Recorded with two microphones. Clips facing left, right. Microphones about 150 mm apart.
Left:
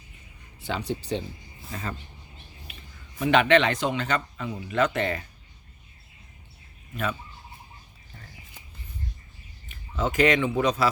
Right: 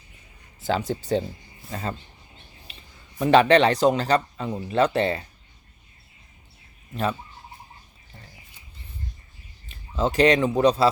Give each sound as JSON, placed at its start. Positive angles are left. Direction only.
{"t": 0.6, "sound": "speech", "side_deg": -40}
{"t": 1.7, "sound": "speech", "side_deg": -30}
{"t": 2.7, "sound": "a sound", "side_deg": -30}
{"t": 3.2, "sound": "speech", "side_deg": -35}
{"t": 6.9, "sound": "speech", "side_deg": -35}
{"t": 9.6, "sound": "a man's voice", "side_deg": -30}